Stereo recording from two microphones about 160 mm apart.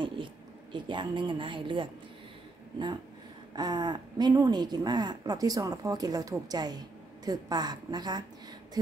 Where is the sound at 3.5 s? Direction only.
25° right (ahead or behind).